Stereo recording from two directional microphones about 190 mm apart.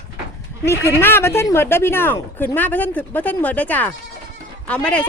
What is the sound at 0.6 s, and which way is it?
Speech, 15° left (ahead or behind).